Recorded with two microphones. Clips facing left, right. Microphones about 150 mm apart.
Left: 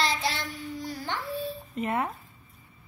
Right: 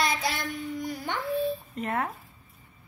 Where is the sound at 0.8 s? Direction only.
20° right (ahead or behind).